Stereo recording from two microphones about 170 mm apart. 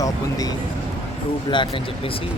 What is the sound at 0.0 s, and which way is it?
Speech, 20° left (ahead or behind).